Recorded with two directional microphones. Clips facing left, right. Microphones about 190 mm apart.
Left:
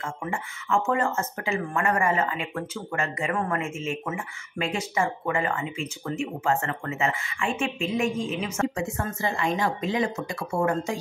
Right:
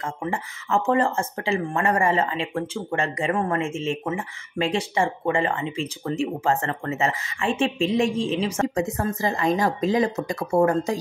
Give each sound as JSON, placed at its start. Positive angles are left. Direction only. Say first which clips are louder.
{"t": 0.2, "sound": "speech", "louder": "right 4 dB", "side_deg": -35}